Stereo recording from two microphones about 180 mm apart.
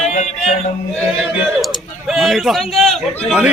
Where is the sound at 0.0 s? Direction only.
40° left (ahead or behind).